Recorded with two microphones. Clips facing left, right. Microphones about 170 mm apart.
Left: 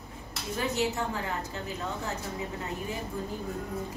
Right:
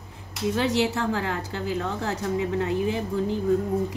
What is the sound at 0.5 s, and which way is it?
Speech, 90° right.